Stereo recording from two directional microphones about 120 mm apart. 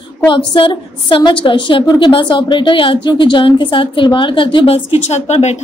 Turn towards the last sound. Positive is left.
turn(degrees=65)  # may be behind; listen again after turning